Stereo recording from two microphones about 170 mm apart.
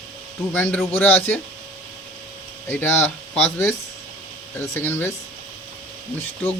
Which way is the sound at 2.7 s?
10° left (ahead or behind).